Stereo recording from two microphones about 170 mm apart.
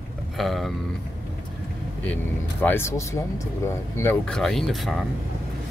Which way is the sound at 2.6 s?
15° left (ahead or behind).